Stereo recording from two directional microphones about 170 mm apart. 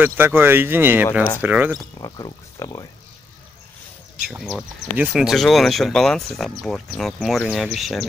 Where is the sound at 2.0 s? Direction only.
25° left (ahead or behind).